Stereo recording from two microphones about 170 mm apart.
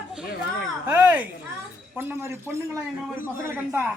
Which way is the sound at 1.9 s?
15° right (ahead or behind).